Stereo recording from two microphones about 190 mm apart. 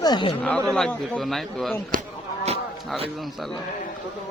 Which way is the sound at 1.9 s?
45° right (ahead or behind).